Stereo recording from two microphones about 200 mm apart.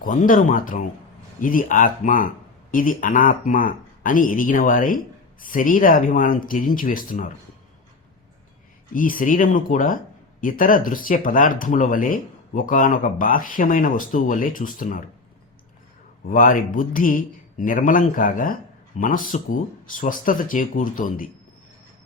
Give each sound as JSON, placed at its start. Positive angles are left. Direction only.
{"t": 0.0, "sound": "speech", "side_deg": 40}
{"t": 8.9, "sound": "speech", "side_deg": 45}
{"t": 16.3, "sound": "speech", "side_deg": 45}